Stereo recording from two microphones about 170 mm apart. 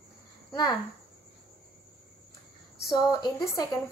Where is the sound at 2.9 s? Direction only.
25° left (ahead or behind).